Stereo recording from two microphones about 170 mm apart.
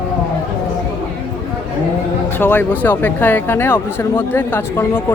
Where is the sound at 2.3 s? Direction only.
10° left (ahead or behind).